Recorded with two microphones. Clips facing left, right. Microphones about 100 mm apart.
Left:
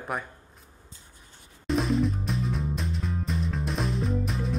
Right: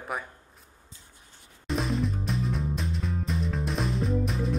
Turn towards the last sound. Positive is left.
turn(degrees=0)  # may be behind; listen again after turning